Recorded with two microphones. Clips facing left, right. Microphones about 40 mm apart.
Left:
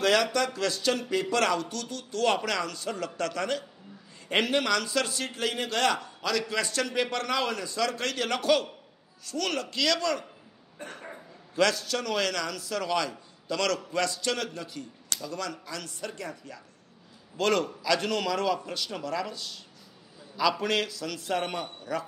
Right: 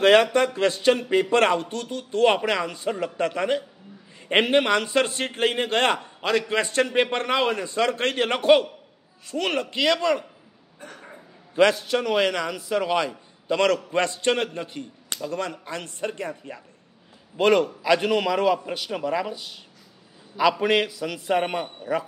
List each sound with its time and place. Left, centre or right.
0.0 s a man's voice: right
11.0 s a sound: centre
11.5 s a man's voice: right